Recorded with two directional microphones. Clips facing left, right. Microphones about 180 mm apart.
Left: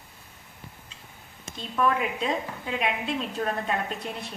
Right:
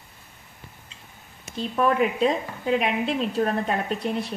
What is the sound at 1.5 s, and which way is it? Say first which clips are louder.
A woman's voice: right 4 dB; 35° right (ahead or behind).